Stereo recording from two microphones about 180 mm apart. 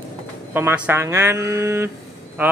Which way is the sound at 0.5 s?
10° right (ahead or behind).